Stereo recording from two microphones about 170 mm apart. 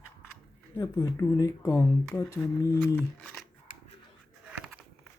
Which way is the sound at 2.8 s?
5° left (ahead or behind).